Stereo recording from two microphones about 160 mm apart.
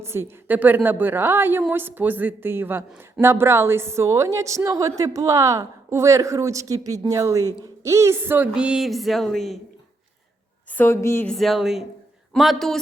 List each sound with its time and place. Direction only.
0.0 s a woman's voice: 15° right (ahead or behind); by 9.6 s centre (ahead or behind)
10.7 s a woman's voice: 15° left (ahead or behind)
11.3 s speech: centre (ahead or behind)